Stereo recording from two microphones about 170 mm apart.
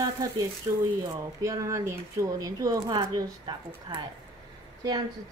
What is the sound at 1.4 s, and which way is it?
Speech, 20° right (ahead or behind).